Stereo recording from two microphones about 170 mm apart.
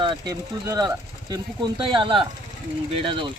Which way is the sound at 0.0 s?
25° right (ahead or behind).